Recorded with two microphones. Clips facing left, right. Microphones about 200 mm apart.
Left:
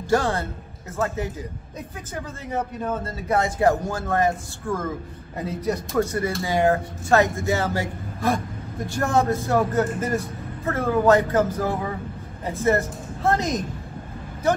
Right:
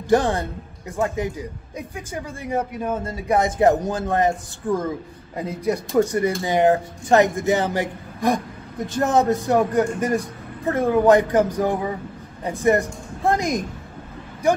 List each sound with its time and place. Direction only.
0.1 s a man's voice: 15° right (ahead or behind)